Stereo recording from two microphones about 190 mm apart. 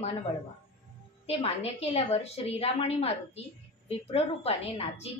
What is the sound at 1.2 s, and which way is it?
A woman's voice, 30° left (ahead or behind).